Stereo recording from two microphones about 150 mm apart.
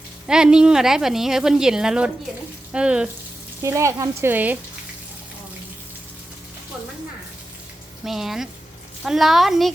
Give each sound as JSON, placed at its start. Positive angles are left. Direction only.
{"t": 0.3, "sound": "a woman's voice", "side_deg": -5}
{"t": 2.7, "sound": "frying", "side_deg": -5}
{"t": 3.6, "sound": "speech", "side_deg": -20}
{"t": 8.0, "sound": "a woman's voice", "side_deg": 0}